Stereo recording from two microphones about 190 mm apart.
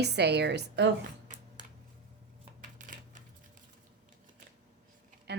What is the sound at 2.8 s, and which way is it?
Coin, 40° right (ahead or behind).